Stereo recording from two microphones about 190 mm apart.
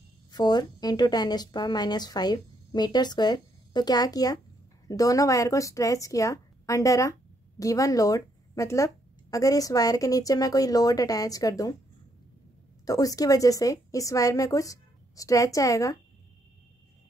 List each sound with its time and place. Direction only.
0.3 s a woman's voice: 20° left (ahead or behind)
12.8 s speech: 20° left (ahead or behind)